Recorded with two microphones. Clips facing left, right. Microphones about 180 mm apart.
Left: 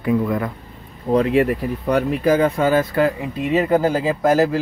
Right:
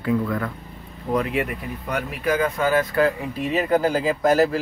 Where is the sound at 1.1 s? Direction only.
30° left (ahead or behind).